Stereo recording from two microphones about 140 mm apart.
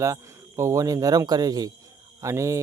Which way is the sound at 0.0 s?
20° right (ahead or behind).